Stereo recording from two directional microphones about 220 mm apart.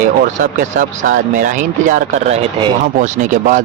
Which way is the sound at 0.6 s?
35° right (ahead or behind).